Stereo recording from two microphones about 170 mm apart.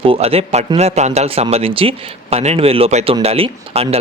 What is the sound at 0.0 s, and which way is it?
A man's voice, 35° right (ahead or behind).